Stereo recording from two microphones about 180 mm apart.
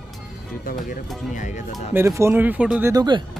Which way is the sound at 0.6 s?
50° left (ahead or behind).